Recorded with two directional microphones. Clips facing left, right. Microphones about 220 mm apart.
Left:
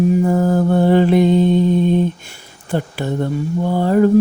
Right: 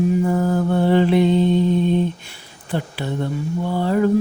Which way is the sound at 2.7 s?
45° left (ahead or behind).